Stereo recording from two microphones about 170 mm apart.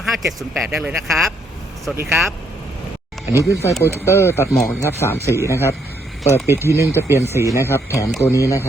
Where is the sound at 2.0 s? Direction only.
15° right (ahead or behind).